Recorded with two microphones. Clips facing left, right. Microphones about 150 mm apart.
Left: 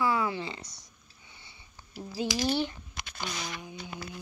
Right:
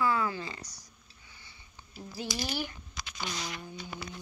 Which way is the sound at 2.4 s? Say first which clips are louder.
Left 10 dB; 25° left (ahead or behind).